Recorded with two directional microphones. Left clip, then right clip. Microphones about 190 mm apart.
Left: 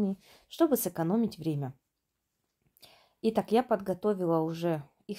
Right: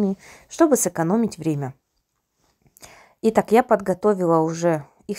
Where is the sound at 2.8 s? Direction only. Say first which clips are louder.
Right 10 dB; 20° right (ahead or behind).